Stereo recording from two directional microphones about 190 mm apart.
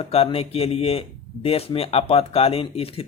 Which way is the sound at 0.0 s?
30° left (ahead or behind).